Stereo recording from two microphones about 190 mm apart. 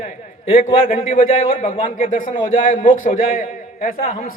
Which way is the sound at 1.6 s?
40° left (ahead or behind).